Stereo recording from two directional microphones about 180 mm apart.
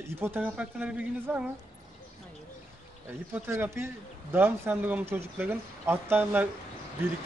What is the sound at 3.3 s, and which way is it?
Speech, 15° right (ahead or behind).